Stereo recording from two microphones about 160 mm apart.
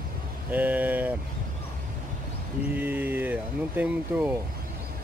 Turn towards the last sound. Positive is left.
turn(degrees=-10)  # may be behind; listen again after turning